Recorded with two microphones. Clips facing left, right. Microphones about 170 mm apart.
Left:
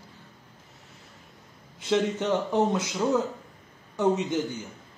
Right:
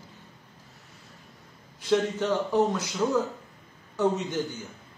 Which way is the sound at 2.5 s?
20° left (ahead or behind).